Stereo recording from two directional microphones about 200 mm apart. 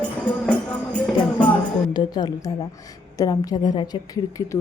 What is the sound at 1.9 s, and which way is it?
A woman's voice, 20° left (ahead or behind).